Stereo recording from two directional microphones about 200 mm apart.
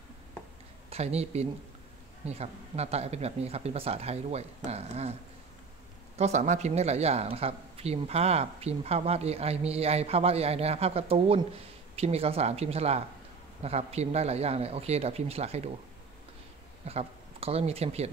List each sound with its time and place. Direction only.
0.8 s a man's voice: 30° right (ahead or behind)
6.1 s a man's voice: 35° right (ahead or behind)
16.8 s speech: 30° right (ahead or behind)